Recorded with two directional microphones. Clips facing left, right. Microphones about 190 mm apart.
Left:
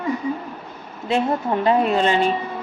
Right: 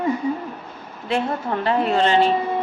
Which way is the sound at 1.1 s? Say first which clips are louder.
Left 2 dB; 20° left (ahead or behind).